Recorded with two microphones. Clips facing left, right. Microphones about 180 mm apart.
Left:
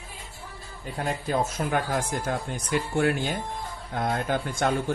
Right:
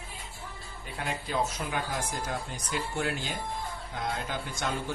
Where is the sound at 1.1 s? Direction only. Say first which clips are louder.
Left 4 dB; 45° left (ahead or behind).